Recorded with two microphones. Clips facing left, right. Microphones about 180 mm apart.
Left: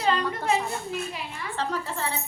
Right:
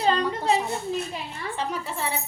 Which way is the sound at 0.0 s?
35° right (ahead or behind).